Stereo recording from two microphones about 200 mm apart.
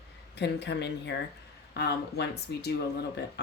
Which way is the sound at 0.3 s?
55° left (ahead or behind).